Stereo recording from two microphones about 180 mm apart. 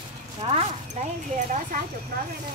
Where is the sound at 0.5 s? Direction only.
35° right (ahead or behind).